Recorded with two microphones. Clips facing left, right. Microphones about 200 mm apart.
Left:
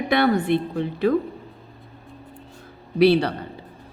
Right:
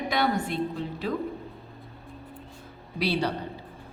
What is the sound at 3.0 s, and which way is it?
Speech, 60° left (ahead or behind).